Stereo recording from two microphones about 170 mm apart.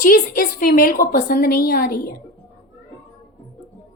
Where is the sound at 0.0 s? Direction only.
55° left (ahead or behind).